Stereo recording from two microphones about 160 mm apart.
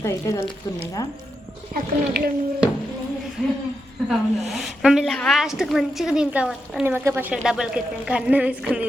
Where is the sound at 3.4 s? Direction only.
5° right (ahead or behind).